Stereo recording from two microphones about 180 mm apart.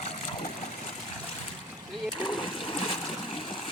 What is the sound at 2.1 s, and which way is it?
Splash, 25° left (ahead or behind).